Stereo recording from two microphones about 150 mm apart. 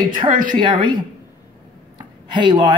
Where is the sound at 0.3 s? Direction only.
60° right (ahead or behind).